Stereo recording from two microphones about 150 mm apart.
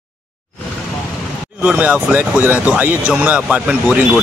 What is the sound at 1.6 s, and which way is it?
Speech, 10° right (ahead or behind).